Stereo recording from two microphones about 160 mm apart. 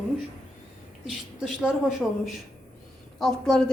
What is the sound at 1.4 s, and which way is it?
A woman's voice, centre (ahead or behind).